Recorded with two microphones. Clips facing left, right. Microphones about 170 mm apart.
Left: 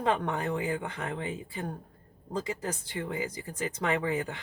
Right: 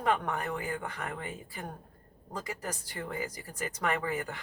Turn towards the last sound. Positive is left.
turn(degrees=25)  # may be behind; listen again after turning